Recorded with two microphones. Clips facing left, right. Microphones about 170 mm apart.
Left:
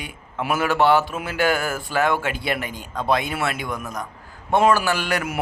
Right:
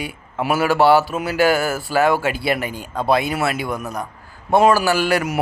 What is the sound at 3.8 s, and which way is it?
Speech, 30° right (ahead or behind).